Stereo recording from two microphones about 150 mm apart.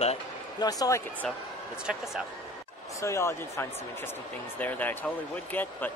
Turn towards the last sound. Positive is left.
turn(degrees=10)  # may be behind; listen again after turning